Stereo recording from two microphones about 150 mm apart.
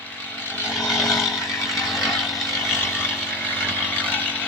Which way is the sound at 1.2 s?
20° left (ahead or behind).